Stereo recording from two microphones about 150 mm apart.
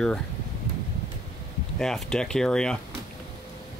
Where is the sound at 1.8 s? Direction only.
5° left (ahead or behind).